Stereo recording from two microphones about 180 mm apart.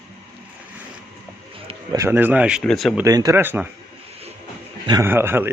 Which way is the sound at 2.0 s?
10° right (ahead or behind).